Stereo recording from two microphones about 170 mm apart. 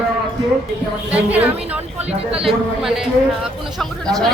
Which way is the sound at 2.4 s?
5° right (ahead or behind).